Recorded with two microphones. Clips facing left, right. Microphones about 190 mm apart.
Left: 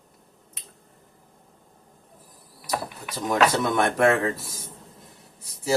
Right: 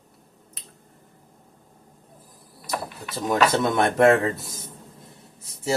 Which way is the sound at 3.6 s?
25° right (ahead or behind).